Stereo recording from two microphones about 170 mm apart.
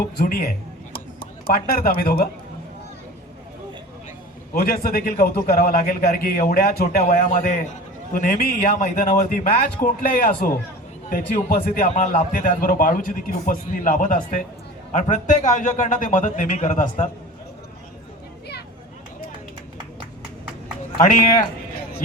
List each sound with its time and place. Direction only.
0.2 s speech: 65° left (ahead or behind)
0.9 s a sound: 60° left (ahead or behind)
4.5 s a man's voice: 65° left (ahead or behind)